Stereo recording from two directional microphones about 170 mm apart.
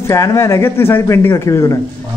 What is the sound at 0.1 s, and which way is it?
A man's voice, 15° left (ahead or behind).